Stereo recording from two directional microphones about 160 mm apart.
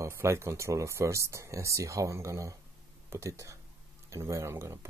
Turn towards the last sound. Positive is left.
turn(degrees=-15)  # may be behind; listen again after turning